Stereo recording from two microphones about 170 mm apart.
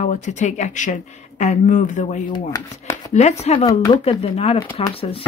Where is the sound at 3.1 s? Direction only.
40° left (ahead or behind).